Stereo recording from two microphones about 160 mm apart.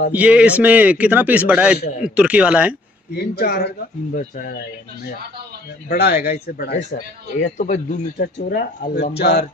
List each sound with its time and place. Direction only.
0.1 s a man's voice: 10° right (ahead or behind)
3.1 s speech: 85° left
5.9 s speech: 80° left
6.9 s speech: 50° left (ahead or behind)
8.2 s speech: 70° left (ahead or behind); by 9.5 s 90° left